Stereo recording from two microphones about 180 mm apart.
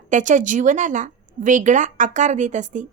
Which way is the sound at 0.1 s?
45° right (ahead or behind).